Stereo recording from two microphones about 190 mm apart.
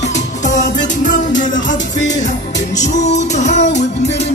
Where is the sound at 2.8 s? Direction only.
40° left (ahead or behind).